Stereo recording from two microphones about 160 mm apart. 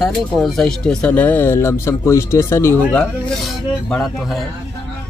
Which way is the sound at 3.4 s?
Centre (ahead or behind).